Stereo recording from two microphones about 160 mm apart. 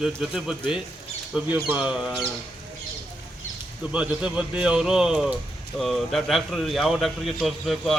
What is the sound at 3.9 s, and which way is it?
A man's voice, 5° right (ahead or behind).